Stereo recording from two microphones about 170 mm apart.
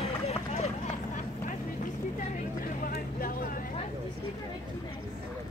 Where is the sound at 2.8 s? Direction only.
55° left (ahead or behind).